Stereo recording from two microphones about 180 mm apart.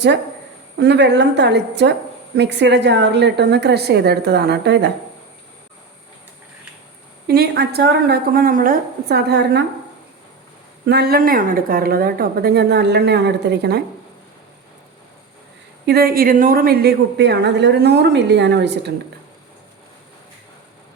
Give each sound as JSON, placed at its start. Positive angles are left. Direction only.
{"t": 0.8, "sound": "a woman's voice", "side_deg": -70}
{"t": 7.3, "sound": "a woman's voice", "side_deg": -60}
{"t": 10.8, "sound": "a woman's voice", "side_deg": -60}
{"t": 15.9, "sound": "a woman's voice", "side_deg": -55}